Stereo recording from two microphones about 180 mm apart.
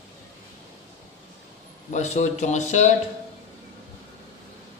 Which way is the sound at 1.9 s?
40° left (ahead or behind).